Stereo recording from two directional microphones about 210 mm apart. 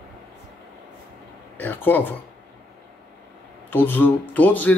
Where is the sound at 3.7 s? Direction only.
10° left (ahead or behind).